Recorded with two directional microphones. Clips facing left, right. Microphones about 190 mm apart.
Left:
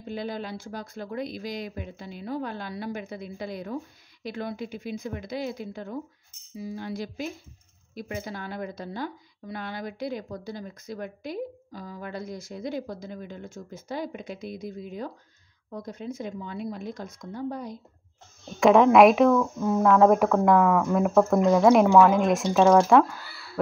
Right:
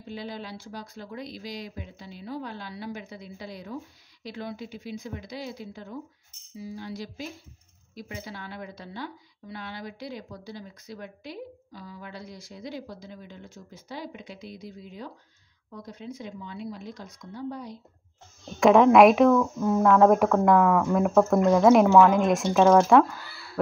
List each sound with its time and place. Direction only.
0.0 s speech: 50° left (ahead or behind)
18.5 s speech: centre (ahead or behind)